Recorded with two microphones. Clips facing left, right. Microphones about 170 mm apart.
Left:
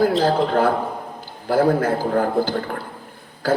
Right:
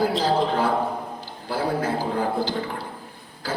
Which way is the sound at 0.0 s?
50° left (ahead or behind).